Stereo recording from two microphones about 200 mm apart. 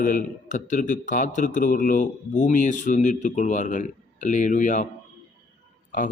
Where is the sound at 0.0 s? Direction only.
40° left (ahead or behind).